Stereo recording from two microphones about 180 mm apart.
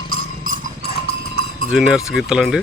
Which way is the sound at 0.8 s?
60° left (ahead or behind).